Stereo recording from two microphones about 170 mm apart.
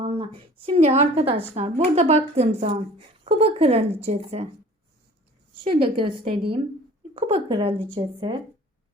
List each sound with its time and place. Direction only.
0.0 s a woman's voice: 30° right (ahead or behind)
5.6 s a woman's voice: 30° right (ahead or behind)